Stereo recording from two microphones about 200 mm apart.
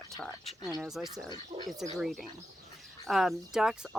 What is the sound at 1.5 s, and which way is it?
Speech, 15° right (ahead or behind).